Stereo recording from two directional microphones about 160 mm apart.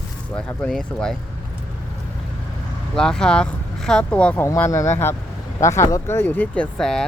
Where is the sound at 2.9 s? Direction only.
5° left (ahead or behind).